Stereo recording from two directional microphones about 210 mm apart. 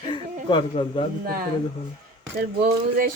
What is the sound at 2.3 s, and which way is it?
Speech, 45° right (ahead or behind).